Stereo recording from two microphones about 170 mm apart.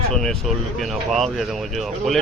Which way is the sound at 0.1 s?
5° left (ahead or behind).